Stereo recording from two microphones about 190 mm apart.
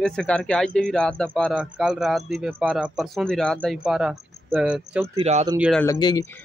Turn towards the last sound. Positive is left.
turn(degrees=25)  # may be behind; listen again after turning